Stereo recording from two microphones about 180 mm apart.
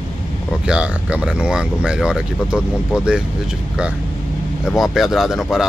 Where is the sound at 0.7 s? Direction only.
5° right (ahead or behind).